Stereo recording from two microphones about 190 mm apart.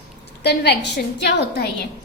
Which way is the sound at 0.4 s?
60° left (ahead or behind).